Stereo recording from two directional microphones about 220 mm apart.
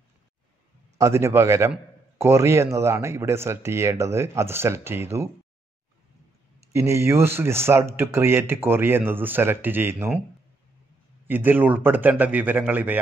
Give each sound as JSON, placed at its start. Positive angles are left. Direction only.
{"t": 0.9, "sound": "a man's voice", "side_deg": -15}
{"t": 6.7, "sound": "a man's voice", "side_deg": -10}
{"t": 11.2, "sound": "a man's voice", "side_deg": -10}